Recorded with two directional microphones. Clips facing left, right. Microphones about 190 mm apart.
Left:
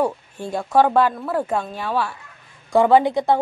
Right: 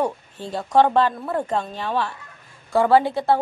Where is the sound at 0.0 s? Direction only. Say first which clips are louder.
Left 2 dB; 10° left (ahead or behind).